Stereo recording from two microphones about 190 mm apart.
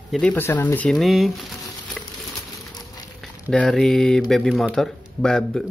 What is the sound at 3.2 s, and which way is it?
Speech, centre (ahead or behind).